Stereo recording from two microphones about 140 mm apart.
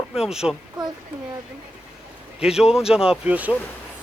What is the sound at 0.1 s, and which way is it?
Speech, 5° right (ahead or behind).